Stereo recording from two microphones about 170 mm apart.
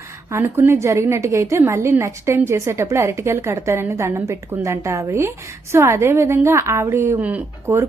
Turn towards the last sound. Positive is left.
turn(degrees=-15)  # may be behind; listen again after turning